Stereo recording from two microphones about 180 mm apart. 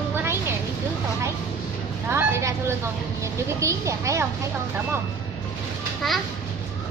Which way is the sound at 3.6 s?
15° right (ahead or behind).